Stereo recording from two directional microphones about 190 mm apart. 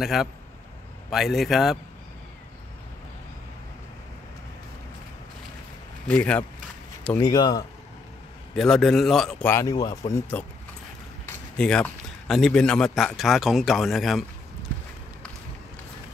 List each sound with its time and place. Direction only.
0.0 s a man's voice: centre (ahead or behind)
6.0 s speech: 5° left (ahead or behind)
8.5 s a man's voice: centre (ahead or behind)
9.5 s a man's voice: 15° left (ahead or behind); by 14.2 s centre (ahead or behind)